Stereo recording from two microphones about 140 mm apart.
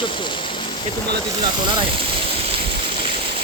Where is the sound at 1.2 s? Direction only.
30° right (ahead or behind).